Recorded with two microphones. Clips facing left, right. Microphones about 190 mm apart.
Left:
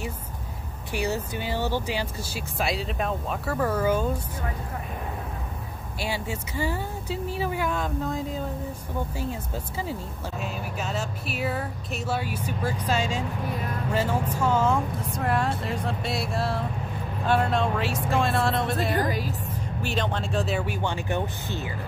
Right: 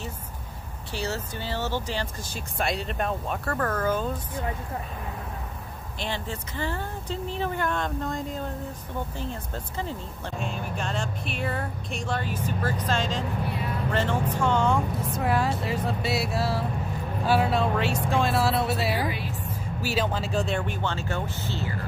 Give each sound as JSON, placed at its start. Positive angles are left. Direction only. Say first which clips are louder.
{"t": 0.9, "sound": "speech", "louder": "left 3 dB", "side_deg": 15}
{"t": 5.9, "sound": "speech", "louder": "left 2 dB", "side_deg": 10}
{"t": 18.9, "sound": "a woman's voice", "louder": "left 3 dB", "side_deg": 40}
{"t": 19.8, "sound": "speech", "louder": "right 1 dB", "side_deg": -5}